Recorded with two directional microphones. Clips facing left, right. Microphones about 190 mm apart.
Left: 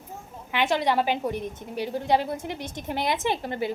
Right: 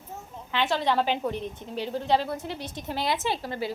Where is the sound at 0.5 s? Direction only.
15° left (ahead or behind).